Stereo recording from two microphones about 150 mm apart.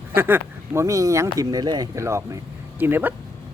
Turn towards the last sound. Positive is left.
turn(degrees=-15)  # may be behind; listen again after turning